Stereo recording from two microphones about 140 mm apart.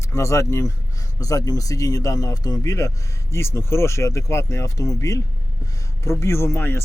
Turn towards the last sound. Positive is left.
turn(degrees=15)  # may be behind; listen again after turning